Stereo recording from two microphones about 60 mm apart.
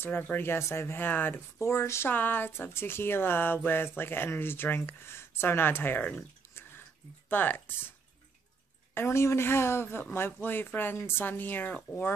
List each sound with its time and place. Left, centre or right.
0.0 s speech: left
1.6 s a woman's voice: left
2.0 s speech: left
6.1 s a sound: left
7.2 s speech: left
8.9 s a woman's voice: left